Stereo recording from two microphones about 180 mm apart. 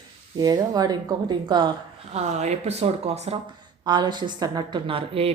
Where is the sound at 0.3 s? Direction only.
20° right (ahead or behind).